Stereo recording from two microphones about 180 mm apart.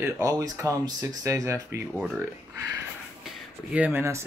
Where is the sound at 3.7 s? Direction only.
10° right (ahead or behind).